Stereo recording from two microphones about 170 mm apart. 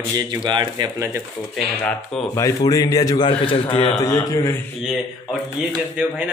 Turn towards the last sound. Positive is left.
turn(degrees=-5)  # may be behind; listen again after turning